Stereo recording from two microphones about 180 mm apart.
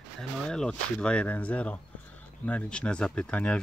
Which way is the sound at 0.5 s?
5° left (ahead or behind).